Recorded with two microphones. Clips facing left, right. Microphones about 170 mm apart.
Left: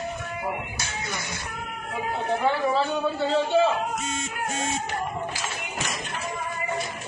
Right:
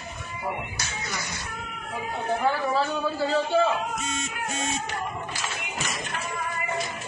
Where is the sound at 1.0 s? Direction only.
25° left (ahead or behind).